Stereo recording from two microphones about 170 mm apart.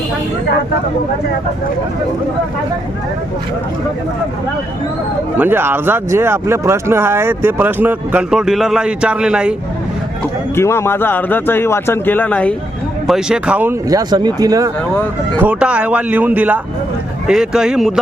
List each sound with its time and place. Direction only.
5.4 s speech: 10° right (ahead or behind)
10.5 s speech: 15° left (ahead or behind)
13.1 s speech: 5° right (ahead or behind); by 14.7 s 20° right (ahead or behind)
15.4 s speech: 10° right (ahead or behind)